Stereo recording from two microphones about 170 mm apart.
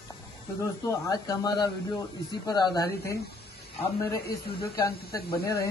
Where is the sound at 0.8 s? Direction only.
20° left (ahead or behind).